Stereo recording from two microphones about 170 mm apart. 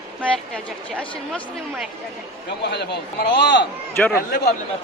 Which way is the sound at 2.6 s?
80° left.